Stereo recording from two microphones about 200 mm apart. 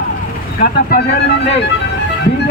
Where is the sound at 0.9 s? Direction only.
50° left (ahead or behind).